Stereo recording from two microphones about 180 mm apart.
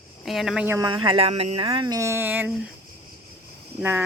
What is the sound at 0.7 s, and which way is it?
Speech, 20° right (ahead or behind).